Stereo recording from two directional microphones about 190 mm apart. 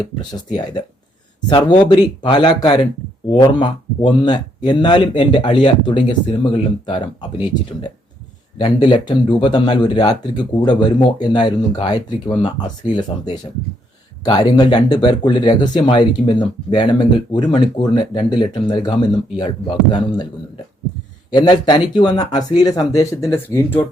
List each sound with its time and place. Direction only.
0.2 s speech: 20° left (ahead or behind)
21.3 s speech: 25° left (ahead or behind)